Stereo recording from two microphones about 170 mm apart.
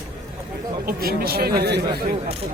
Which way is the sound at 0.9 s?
65° right (ahead or behind).